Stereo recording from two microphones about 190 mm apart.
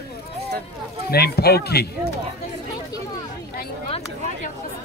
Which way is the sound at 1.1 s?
55° left (ahead or behind).